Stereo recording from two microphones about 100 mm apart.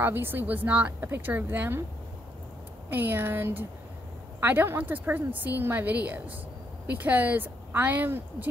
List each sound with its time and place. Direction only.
0.0 s speech: 20° right (ahead or behind)
2.9 s a woman's voice: 20° right (ahead or behind)